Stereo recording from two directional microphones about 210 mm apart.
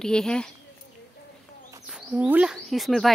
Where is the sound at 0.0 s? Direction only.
5° left (ahead or behind).